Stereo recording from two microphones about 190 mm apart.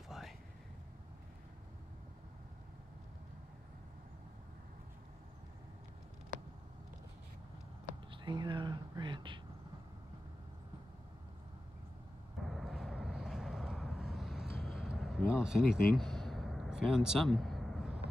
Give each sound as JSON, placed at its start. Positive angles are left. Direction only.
{"t": 8.1, "sound": "whispering", "side_deg": -25}
{"t": 12.4, "sound": "vehicle", "side_deg": 0}
{"t": 14.6, "sound": "a sound", "side_deg": 0}